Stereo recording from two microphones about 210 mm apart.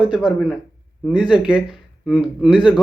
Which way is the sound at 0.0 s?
5° right (ahead or behind).